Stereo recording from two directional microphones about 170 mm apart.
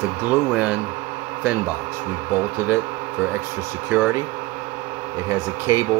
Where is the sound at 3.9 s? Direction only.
15° right (ahead or behind).